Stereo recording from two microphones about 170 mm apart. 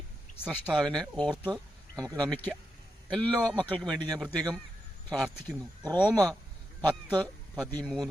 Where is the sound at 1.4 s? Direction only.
5° left (ahead or behind).